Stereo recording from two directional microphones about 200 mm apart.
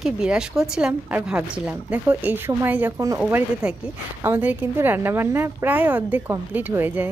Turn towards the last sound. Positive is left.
turn(degrees=-10)  # may be behind; listen again after turning